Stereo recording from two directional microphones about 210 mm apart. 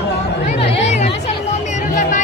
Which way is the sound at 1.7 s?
35° left (ahead or behind).